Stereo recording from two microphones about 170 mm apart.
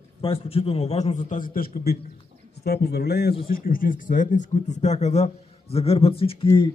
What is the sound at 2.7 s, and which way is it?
Speech, 70° left (ahead or behind).